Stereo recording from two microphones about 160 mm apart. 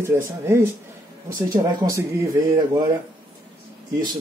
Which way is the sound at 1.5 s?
25° right (ahead or behind).